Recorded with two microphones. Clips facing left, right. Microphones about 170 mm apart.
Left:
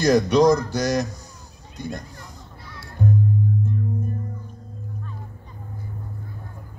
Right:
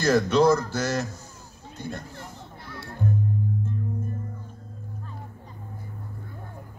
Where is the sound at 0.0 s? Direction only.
15° left (ahead or behind).